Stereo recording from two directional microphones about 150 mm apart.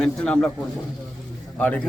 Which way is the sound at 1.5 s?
10° left (ahead or behind).